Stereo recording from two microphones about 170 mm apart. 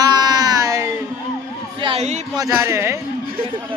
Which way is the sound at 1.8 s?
35° right (ahead or behind).